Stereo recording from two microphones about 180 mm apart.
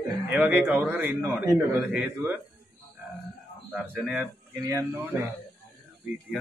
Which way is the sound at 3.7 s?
10° right (ahead or behind).